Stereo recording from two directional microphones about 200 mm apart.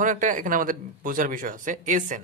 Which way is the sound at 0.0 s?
40° right (ahead or behind).